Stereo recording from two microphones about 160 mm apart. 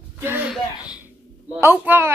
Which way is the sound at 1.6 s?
10° right (ahead or behind).